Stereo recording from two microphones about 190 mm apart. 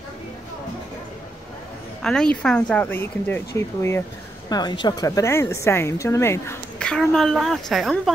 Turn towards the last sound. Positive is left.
turn(degrees=0)  # may be behind; listen again after turning